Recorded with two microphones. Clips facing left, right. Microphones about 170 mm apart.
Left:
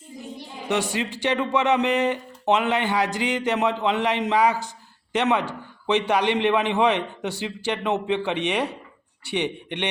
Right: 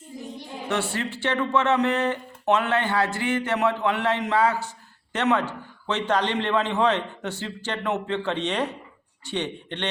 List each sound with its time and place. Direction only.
0.7 s speech: 15° left (ahead or behind)